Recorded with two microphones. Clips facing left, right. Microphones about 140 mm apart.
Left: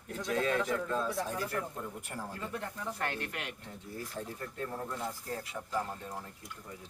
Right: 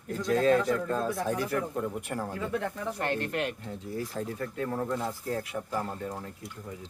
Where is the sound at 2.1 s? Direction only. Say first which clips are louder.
Right 8 dB; 90° right.